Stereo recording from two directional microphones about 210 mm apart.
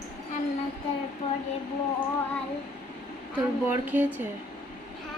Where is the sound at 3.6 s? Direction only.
10° right (ahead or behind).